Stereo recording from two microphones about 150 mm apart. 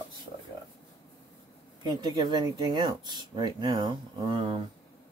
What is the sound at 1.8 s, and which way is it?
Speech, 30° right (ahead or behind).